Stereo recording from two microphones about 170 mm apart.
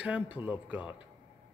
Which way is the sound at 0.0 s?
10° right (ahead or behind).